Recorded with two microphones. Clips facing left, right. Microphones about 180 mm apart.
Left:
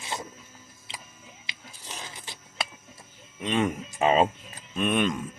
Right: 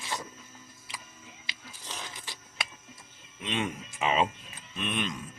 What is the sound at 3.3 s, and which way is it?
Speech, 45° left (ahead or behind).